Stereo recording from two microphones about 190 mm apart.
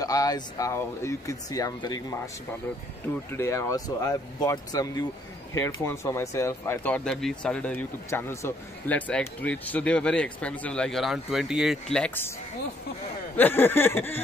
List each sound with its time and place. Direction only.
0.0 s speech: 20° left (ahead or behind)
3.3 s speech: 15° left (ahead or behind)
13.4 s speech: 10° left (ahead or behind)